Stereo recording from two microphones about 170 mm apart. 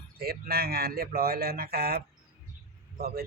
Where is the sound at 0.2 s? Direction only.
65° right (ahead or behind).